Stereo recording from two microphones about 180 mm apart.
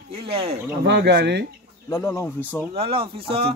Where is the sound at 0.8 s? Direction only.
65° right (ahead or behind).